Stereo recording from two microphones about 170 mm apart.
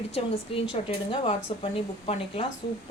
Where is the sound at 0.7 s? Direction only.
30° left (ahead or behind).